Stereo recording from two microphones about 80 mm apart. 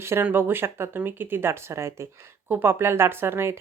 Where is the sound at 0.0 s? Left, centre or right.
Right.